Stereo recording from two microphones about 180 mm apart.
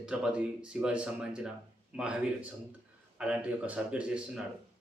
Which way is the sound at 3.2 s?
5° right (ahead or behind).